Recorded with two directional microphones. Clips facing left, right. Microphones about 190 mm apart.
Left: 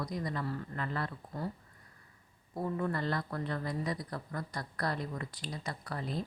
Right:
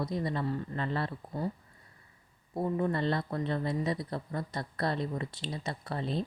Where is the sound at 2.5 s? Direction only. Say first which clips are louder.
Right 4 dB; 25° right (ahead or behind).